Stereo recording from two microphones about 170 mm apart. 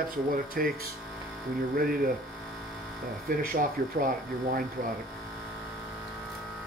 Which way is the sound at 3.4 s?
55° right (ahead or behind).